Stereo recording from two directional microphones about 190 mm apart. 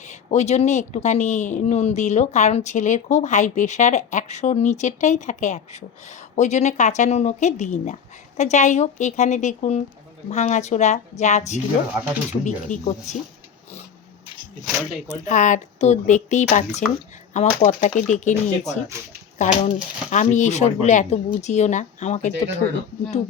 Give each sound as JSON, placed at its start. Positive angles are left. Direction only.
{"t": 0.1, "sound": "speech", "side_deg": 35}
{"t": 15.0, "sound": "speech", "side_deg": 40}